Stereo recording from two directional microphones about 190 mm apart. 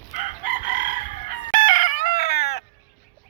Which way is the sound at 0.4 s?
45° right (ahead or behind).